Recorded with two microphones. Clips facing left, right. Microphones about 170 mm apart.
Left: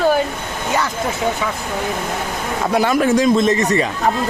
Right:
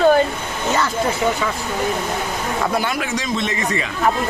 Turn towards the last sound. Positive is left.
turn(degrees=40)  # may be behind; listen again after turning